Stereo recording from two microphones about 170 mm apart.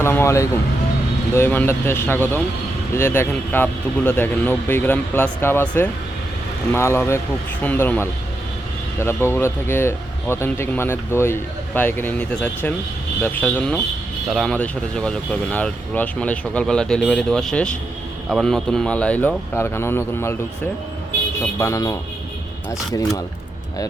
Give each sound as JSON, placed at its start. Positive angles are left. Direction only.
{"t": 0.0, "sound": "speech", "side_deg": 15}
{"t": 21.6, "sound": "speech", "side_deg": 20}